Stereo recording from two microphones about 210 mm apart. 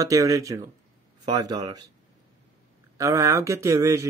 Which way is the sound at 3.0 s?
15° right (ahead or behind).